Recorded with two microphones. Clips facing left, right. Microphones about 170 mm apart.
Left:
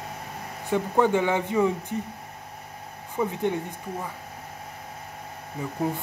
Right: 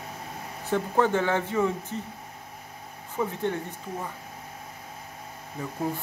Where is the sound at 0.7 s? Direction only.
15° left (ahead or behind).